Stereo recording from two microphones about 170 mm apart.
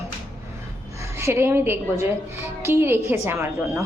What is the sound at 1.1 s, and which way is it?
A woman's voice, 15° right (ahead or behind).